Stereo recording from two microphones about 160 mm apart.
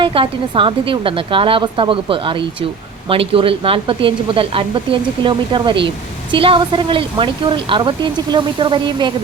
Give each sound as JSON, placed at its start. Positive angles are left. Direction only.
{"t": 0.0, "sound": "speech", "side_deg": -35}